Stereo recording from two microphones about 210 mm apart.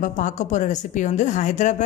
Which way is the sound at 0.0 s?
35° left (ahead or behind).